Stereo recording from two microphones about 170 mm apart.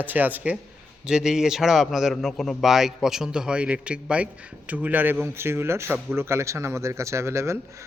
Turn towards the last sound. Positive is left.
turn(degrees=-15)  # may be behind; listen again after turning